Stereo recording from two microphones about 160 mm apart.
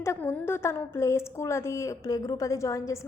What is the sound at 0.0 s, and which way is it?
A woman's voice, 15° left (ahead or behind).